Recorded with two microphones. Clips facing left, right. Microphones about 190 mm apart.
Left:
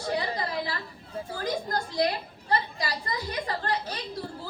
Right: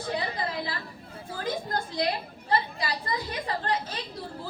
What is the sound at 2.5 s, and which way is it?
A woman's voice, 40° left (ahead or behind).